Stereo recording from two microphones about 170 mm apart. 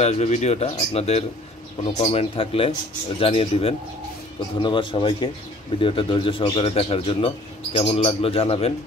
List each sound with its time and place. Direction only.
0.0 s a man's voice: 40° left (ahead or behind)